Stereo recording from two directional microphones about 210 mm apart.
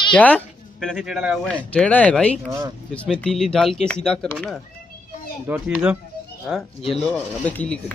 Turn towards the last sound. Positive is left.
turn(degrees=5)  # may be behind; listen again after turning